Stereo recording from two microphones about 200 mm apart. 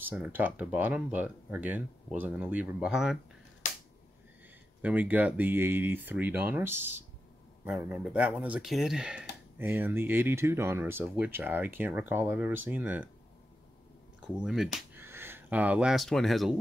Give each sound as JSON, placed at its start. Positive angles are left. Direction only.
{"t": 0.0, "sound": "speech", "side_deg": -10}
{"t": 4.8, "sound": "speech", "side_deg": -10}
{"t": 14.2, "sound": "speech", "side_deg": -5}